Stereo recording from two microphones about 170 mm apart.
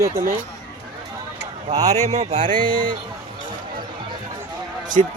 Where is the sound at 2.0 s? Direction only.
40° right (ahead or behind).